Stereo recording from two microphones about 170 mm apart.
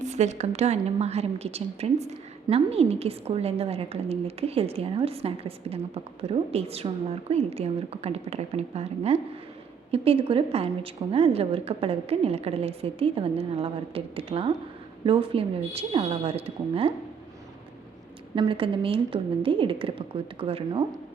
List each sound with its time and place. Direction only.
0.0 s a woman's voice: 45° right (ahead or behind)
18.3 s a woman's voice: 30° right (ahead or behind)